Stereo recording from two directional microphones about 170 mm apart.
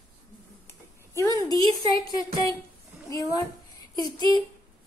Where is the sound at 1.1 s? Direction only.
20° left (ahead or behind).